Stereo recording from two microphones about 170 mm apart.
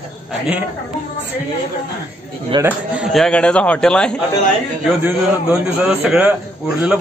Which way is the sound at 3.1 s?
5° left (ahead or behind).